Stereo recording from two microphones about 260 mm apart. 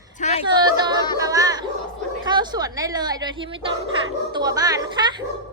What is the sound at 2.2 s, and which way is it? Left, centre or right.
A woman's voice, centre.